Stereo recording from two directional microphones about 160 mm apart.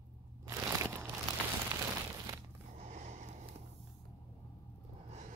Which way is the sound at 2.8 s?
45° right (ahead or behind).